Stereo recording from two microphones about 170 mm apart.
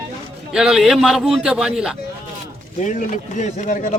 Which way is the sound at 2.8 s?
50° left (ahead or behind).